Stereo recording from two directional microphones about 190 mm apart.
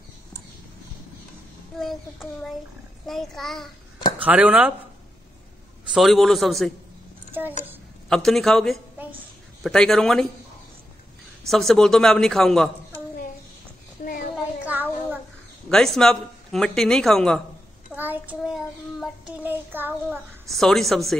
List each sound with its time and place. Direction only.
1.8 s speech: centre (ahead or behind)
4.2 s child singing: 5° right (ahead or behind)
5.9 s speech: centre (ahead or behind)
8.1 s speech: centre (ahead or behind)
11.4 s speech: centre (ahead or behind)
14.0 s a sound: 45° left (ahead or behind)
14.3 s a sound: 10° right (ahead or behind)
15.7 s speech: centre (ahead or behind)
17.9 s child singing: 10° right (ahead or behind)
20.4 s speech: centre (ahead or behind)